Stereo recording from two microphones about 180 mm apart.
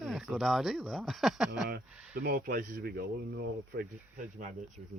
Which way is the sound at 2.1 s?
55° right (ahead or behind).